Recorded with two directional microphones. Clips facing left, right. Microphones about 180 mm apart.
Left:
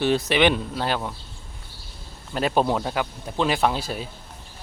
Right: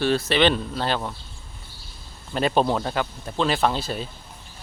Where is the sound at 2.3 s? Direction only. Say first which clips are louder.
Right 1 dB; 5° left (ahead or behind).